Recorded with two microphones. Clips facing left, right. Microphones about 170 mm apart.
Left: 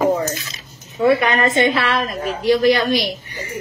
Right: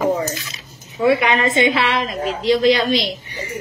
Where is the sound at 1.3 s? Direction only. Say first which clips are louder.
Even; 55° left (ahead or behind).